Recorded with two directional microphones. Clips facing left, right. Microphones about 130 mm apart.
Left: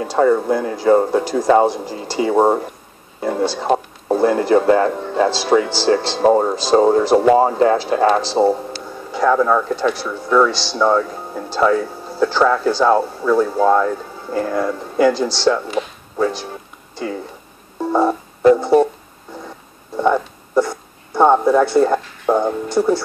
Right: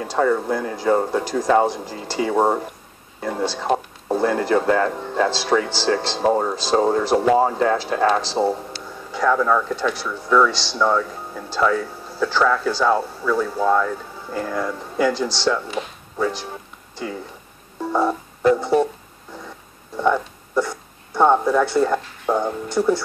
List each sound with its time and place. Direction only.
0.0 s speech: 15° left (ahead or behind)
5.3 s speech: 10° left (ahead or behind)
6.2 s speech: 25° left (ahead or behind)
6.5 s speech: 15° left (ahead or behind)
17.9 s a sound: 20° left (ahead or behind)
20.0 s a sound: 15° left (ahead or behind)
21.9 s speech: 15° left (ahead or behind)